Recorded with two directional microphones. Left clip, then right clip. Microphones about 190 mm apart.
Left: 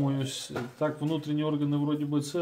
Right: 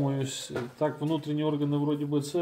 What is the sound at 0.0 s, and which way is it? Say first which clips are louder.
Speech: even; 20° left (ahead or behind).